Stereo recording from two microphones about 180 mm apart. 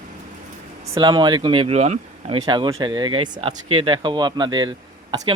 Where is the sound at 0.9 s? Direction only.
25° right (ahead or behind).